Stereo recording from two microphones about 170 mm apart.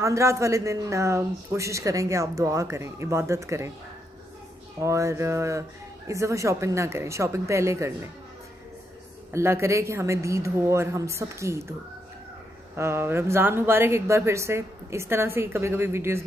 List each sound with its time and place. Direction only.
0.0 s speech: 15° right (ahead or behind)
4.7 s speech: 15° right (ahead or behind)
9.3 s speech: 15° right (ahead or behind)
12.7 s speech: 15° right (ahead or behind)